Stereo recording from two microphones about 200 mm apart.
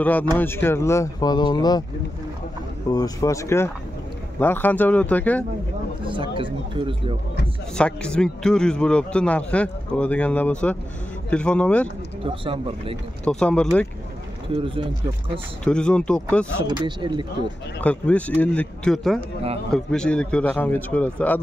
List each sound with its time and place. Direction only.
0.4 s a man's voice: 10° left (ahead or behind)
2.9 s a man's voice: 20° left (ahead or behind)
6.3 s speech: 25° right (ahead or behind)
7.7 s a man's voice: 5° left (ahead or behind)
12.2 s speech: 25° right (ahead or behind)
13.2 s a man's voice: 5° left (ahead or behind)
14.5 s speech: 25° right (ahead or behind)
15.6 s a man's voice: 5° left (ahead or behind)
16.5 s speech: 20° right (ahead or behind)
17.7 s a man's voice: 5° left (ahead or behind)